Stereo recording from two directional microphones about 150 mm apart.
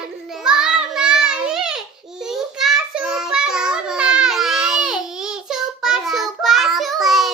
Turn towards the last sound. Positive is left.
turn(degrees=0)  # may be behind; listen again after turning